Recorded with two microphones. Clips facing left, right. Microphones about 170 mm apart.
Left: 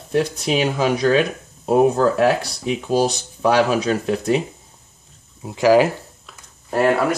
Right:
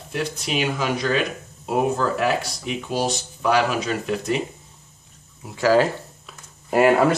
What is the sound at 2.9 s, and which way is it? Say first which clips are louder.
Speech: left 6 dB; 40° left (ahead or behind).